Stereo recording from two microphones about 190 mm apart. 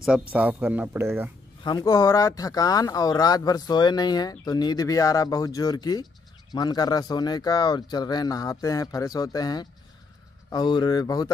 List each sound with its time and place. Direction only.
0.3 s speech: 10° right (ahead or behind)
1.6 s speech: 20° left (ahead or behind)